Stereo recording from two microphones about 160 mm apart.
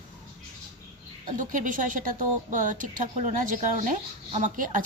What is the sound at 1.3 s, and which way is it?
A woman's voice, 55° right (ahead or behind).